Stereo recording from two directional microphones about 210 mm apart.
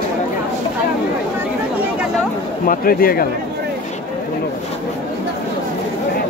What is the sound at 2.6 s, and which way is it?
Speech, 45° left (ahead or behind).